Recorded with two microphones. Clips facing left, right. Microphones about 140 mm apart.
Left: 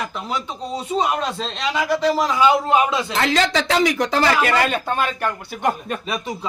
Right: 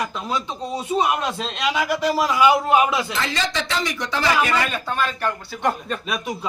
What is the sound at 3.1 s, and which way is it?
A woman's voice, 75° left (ahead or behind).